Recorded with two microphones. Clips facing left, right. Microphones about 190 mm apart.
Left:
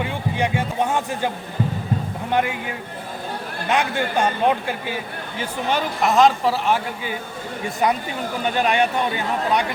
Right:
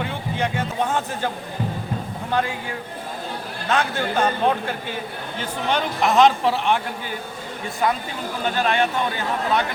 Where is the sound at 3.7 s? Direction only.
15° left (ahead or behind).